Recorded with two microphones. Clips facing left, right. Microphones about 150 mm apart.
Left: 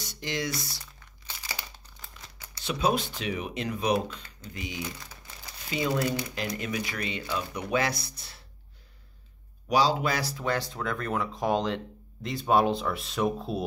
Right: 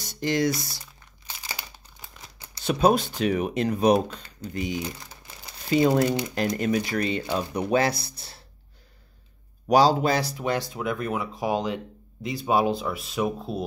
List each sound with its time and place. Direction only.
0.0 s a sound: 40° right (ahead or behind)
1.5 s crumpling: 15° right (ahead or behind)
2.6 s speech: 45° right (ahead or behind)
9.7 s speech: 40° right (ahead or behind)
10.2 s speech: 20° right (ahead or behind); by 13.7 s centre (ahead or behind)